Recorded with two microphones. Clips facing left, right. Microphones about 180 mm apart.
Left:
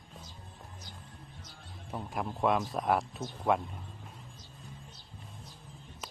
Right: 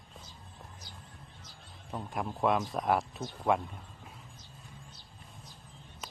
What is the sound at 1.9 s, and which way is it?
Speech, centre (ahead or behind).